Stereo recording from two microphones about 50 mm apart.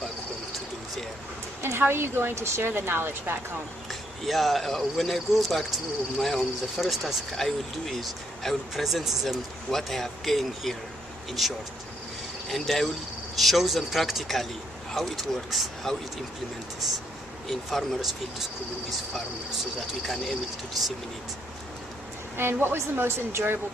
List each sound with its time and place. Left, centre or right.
1.6 s speech: right
4.3 s speech: centre
17.5 s speech: centre
22.4 s a woman's voice: right